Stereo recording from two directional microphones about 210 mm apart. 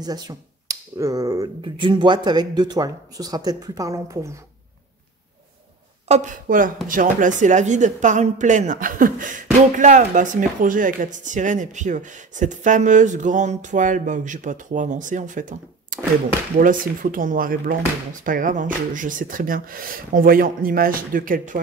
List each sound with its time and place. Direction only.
0.0 s speech: 20° right (ahead or behind)
6.0 s a woman's voice: 35° right (ahead or behind)